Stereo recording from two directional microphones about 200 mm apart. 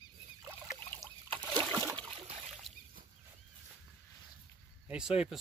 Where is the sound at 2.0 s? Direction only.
25° right (ahead or behind).